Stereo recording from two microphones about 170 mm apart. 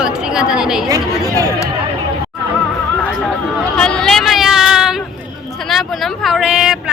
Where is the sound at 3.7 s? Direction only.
5° left (ahead or behind).